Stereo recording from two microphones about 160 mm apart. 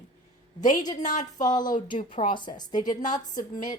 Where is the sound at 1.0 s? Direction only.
50° left (ahead or behind).